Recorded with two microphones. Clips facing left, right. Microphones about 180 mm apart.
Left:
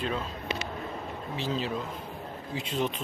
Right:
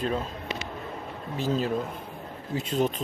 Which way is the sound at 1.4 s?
45° right (ahead or behind).